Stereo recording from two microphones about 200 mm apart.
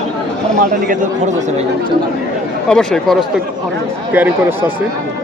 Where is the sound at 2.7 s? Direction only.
Centre (ahead or behind).